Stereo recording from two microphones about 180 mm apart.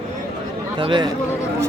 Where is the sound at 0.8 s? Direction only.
25° right (ahead or behind).